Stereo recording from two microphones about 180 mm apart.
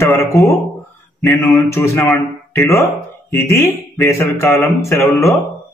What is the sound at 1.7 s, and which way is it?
Speech, 15° left (ahead or behind).